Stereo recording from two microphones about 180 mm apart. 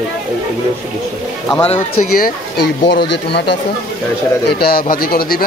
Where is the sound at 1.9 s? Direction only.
55° left (ahead or behind).